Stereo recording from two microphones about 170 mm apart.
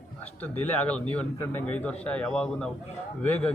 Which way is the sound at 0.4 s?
5° left (ahead or behind).